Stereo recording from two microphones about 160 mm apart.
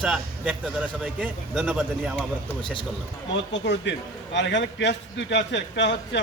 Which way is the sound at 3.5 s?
90° left.